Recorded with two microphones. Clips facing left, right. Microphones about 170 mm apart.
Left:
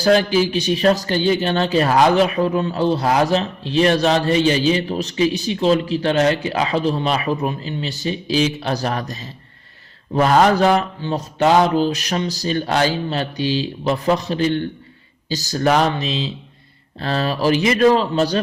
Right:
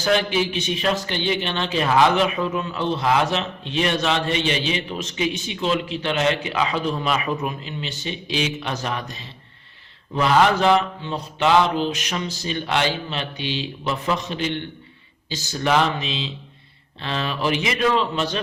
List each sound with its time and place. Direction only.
0.0 s a man's voice: 35° left (ahead or behind)